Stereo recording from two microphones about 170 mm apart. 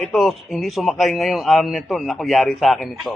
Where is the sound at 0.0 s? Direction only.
Centre (ahead or behind).